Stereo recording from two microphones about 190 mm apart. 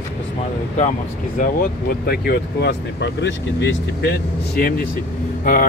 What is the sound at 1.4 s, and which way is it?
Speech, 50° left (ahead or behind).